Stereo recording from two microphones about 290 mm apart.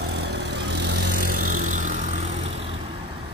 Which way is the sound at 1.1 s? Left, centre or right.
Right.